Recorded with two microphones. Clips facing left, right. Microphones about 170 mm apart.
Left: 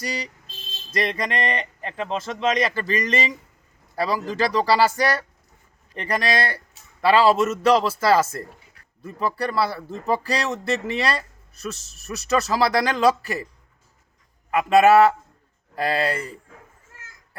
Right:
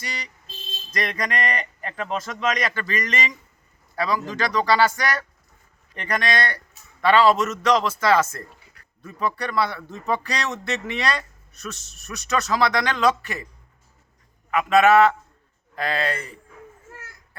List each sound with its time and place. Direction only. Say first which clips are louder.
0.0 s a man's voice: left 6 dB; 35° left (ahead or behind)
14.5 s speech: left 2 dB; 35° left (ahead or behind)